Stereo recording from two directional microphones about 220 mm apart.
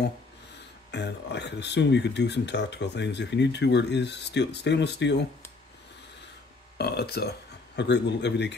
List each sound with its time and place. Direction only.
0.9 s speech: 50° left (ahead or behind)
6.8 s speech: 45° left (ahead or behind)